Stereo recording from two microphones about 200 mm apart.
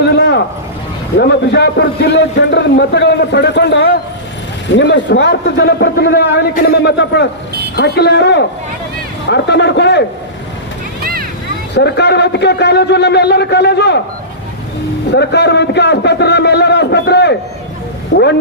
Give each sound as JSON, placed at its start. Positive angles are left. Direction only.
{"t": 0.2, "sound": "a sound", "side_deg": 55}
{"t": 1.5, "sound": "a man's voice", "side_deg": 55}
{"t": 11.0, "sound": "a sound", "side_deg": -45}
{"t": 11.7, "sound": "a man's voice", "side_deg": 55}
{"t": 15.1, "sound": "a man's voice", "side_deg": 60}
{"t": 18.1, "sound": "speech", "side_deg": 65}